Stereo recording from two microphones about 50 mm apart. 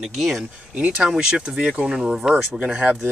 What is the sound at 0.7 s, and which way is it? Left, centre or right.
Speech, right.